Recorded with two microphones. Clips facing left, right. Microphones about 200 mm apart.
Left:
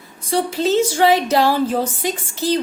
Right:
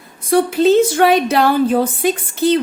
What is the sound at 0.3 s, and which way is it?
A woman's voice, 55° right (ahead or behind).